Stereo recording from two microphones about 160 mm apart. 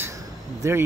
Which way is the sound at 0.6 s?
20° right (ahead or behind).